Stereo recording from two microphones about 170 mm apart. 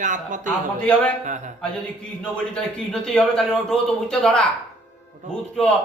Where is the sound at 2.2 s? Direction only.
5° left (ahead or behind).